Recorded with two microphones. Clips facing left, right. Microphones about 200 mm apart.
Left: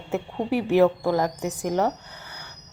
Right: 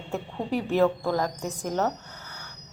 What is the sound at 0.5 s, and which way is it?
A woman's voice, 15° left (ahead or behind).